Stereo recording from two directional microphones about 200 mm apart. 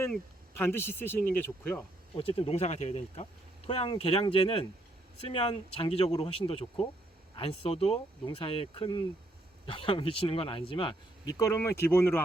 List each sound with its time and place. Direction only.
0.5 s speech: 10° left (ahead or behind)
2.1 s speech: 25° left (ahead or behind); by 12.2 s 10° left (ahead or behind)